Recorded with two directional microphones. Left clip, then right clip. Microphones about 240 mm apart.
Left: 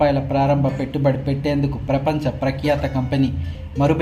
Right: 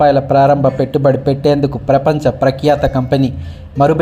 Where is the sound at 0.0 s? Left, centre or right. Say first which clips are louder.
Right 9 dB; right.